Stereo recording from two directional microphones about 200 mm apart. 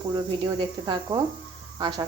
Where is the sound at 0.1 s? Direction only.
20° right (ahead or behind).